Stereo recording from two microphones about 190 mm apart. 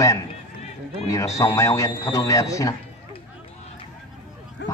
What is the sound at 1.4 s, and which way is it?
A man's voice, 15° left (ahead or behind).